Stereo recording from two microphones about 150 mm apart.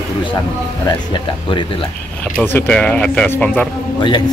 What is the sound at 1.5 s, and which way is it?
Speech, 35° left (ahead or behind).